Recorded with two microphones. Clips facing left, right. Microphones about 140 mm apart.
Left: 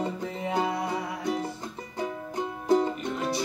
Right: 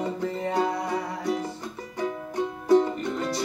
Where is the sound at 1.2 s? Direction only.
20° left (ahead or behind).